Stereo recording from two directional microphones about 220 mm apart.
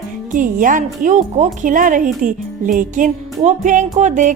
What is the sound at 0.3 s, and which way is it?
Speech, 35° right (ahead or behind).